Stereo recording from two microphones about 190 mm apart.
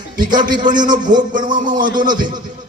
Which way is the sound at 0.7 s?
45° right (ahead or behind).